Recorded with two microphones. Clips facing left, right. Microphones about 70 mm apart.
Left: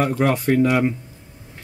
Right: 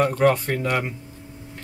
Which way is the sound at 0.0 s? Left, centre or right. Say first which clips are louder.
Right 1 dB; centre.